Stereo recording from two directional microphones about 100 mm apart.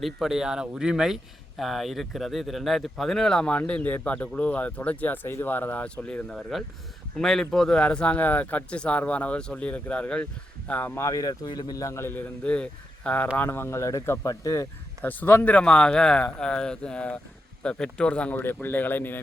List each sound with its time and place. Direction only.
0.0 s speech: 5° right (ahead or behind); by 11.0 s 20° left (ahead or behind)
11.0 s speech: 35° left (ahead or behind)
12.5 s speech: 10° left (ahead or behind); by 14.7 s 35° left (ahead or behind)
15.0 s speech: 15° left (ahead or behind)